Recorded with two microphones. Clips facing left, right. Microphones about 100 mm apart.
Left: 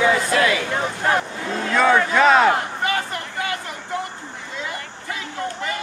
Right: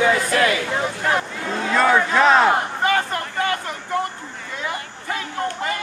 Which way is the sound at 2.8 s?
45° right (ahead or behind).